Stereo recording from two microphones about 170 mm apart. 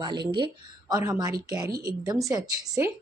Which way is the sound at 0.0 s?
25° right (ahead or behind).